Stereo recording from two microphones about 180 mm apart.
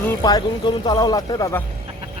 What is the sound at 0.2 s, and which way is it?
Speech, 20° left (ahead or behind).